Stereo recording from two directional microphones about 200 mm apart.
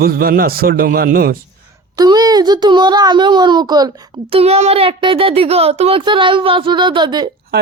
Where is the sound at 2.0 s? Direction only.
20° right (ahead or behind).